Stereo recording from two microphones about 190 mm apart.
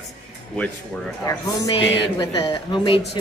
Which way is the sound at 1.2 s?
20° left (ahead or behind).